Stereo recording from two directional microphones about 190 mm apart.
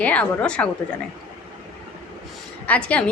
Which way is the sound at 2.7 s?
5° left (ahead or behind).